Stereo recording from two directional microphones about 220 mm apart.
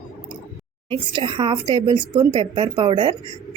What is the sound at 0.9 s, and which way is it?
A woman's voice, 25° right (ahead or behind).